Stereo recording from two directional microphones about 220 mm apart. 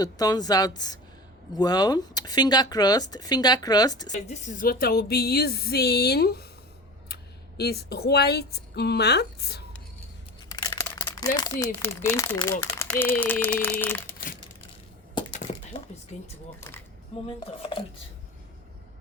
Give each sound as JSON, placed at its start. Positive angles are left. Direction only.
{"t": 0.0, "sound": "speech", "side_deg": 15}
{"t": 4.1, "sound": "speech", "side_deg": 35}
{"t": 10.5, "sound": "a sound", "side_deg": 15}
{"t": 11.3, "sound": "speech", "side_deg": 15}
{"t": 17.2, "sound": "speech", "side_deg": 25}